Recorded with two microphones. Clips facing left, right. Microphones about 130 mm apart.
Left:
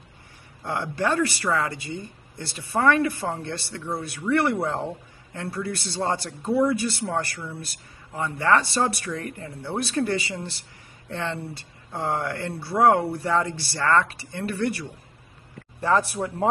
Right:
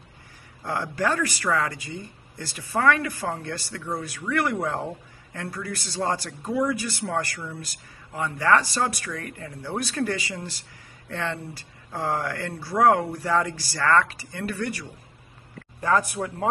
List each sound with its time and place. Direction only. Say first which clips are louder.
0.7 s speech: left 1 dB; 20° left (ahead or behind)